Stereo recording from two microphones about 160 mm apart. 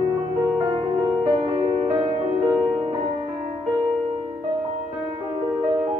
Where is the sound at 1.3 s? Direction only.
35° right (ahead or behind).